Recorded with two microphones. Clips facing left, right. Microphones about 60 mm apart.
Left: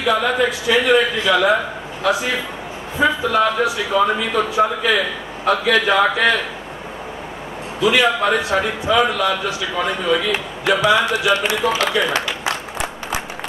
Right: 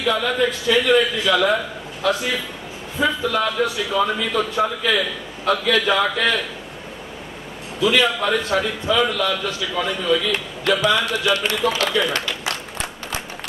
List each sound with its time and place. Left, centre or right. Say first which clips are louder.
0.0 s a man's voice: left 3 dB; centre
7.8 s a man's voice: left 2 dB; centre